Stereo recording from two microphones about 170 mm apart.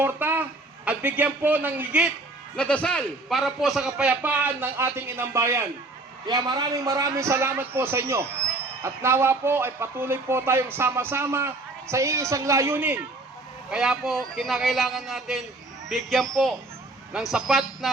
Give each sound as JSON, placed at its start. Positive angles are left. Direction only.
{"t": 0.0, "sound": "a man's voice", "side_deg": -15}
{"t": 2.6, "sound": "a man's voice", "side_deg": 5}